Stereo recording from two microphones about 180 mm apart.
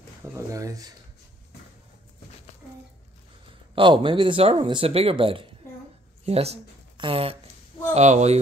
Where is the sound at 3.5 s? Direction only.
25° right (ahead or behind).